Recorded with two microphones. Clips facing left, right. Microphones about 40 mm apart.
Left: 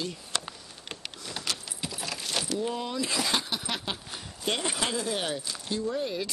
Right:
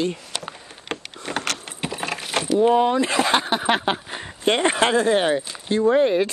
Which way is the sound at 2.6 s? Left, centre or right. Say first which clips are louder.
Right 14 dB; right.